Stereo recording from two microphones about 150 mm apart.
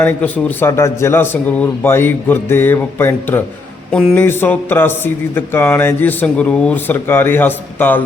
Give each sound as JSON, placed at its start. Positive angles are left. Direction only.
{"t": 0.0, "sound": "speech", "side_deg": 10}